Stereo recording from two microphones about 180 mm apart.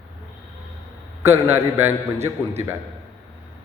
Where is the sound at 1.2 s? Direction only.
15° right (ahead or behind).